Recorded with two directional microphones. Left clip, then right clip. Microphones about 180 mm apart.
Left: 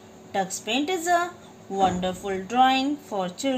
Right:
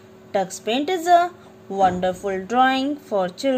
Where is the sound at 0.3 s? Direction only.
65° right (ahead or behind).